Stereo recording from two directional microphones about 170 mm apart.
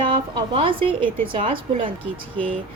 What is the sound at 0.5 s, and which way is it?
A woman's voice, 30° right (ahead or behind).